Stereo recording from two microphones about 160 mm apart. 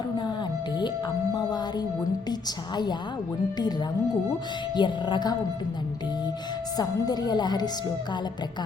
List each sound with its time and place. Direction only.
4.7 s a woman's voice: 30° left (ahead or behind)
6.7 s a woman's voice: 25° left (ahead or behind)